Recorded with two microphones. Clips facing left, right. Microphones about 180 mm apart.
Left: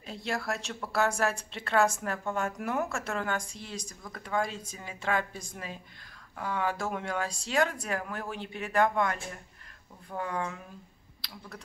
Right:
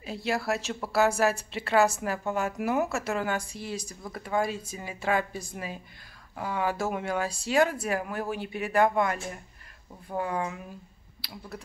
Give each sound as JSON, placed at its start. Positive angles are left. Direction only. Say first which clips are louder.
{"t": 0.0, "sound": "speech", "louder": "right 4 dB", "side_deg": -5}